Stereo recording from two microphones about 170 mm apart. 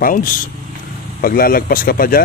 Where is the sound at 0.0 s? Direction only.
55° left (ahead or behind).